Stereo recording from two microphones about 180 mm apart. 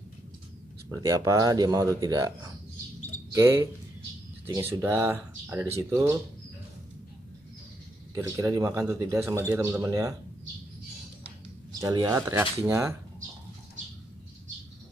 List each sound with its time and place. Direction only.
0.8 s speech: 15° right (ahead or behind)
3.4 s a man's voice: 15° right (ahead or behind)
8.1 s a man's voice: 15° right (ahead or behind)
11.8 s a man's voice: 20° right (ahead or behind)